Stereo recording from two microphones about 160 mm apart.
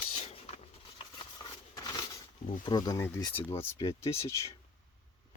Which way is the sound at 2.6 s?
25° left (ahead or behind).